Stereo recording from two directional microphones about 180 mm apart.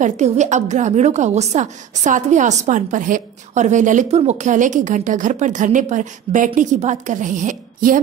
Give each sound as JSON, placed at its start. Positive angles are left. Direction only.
{"t": 0.0, "sound": "a woman's voice", "side_deg": -40}